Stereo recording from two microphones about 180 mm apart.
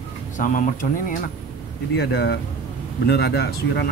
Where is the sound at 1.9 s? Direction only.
70° left (ahead or behind).